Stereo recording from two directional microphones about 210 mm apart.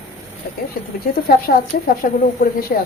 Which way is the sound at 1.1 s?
45° left (ahead or behind).